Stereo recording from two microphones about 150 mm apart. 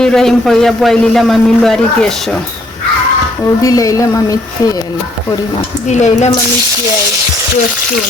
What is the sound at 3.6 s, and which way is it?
Speech, 25° left (ahead or behind).